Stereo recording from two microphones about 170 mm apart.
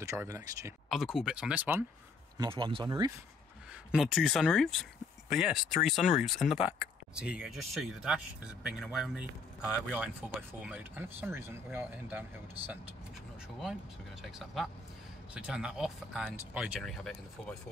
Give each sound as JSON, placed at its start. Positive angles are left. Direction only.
{"t": 0.0, "sound": "speech", "side_deg": -15}
{"t": 0.8, "sound": "speech", "side_deg": 0}
{"t": 2.3, "sound": "speech", "side_deg": -25}
{"t": 3.9, "sound": "speech", "side_deg": 0}
{"t": 14.2, "sound": "speech", "side_deg": 0}